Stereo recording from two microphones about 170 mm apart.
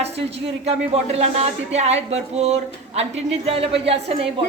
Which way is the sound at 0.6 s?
40° right (ahead or behind).